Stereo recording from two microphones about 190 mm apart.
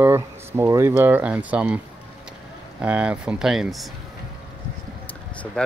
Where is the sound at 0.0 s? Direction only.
10° right (ahead or behind).